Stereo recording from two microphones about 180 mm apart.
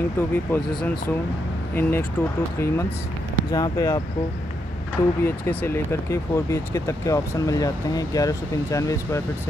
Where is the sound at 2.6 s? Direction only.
15° left (ahead or behind).